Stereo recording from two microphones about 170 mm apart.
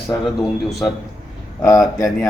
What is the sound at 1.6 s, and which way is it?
Speech, 20° left (ahead or behind).